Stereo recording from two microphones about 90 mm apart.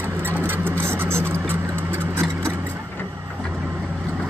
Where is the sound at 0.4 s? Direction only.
25° right (ahead or behind).